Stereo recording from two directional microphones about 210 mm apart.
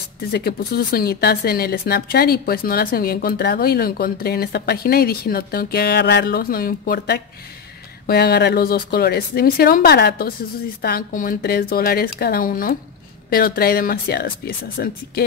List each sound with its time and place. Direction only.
0.2 s speech: 50° left (ahead or behind)